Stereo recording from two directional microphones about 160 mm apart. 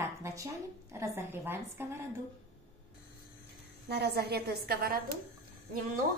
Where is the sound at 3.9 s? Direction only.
90° right.